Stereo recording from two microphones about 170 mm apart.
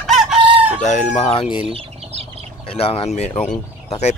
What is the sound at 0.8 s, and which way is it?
Speech, 45° left (ahead or behind).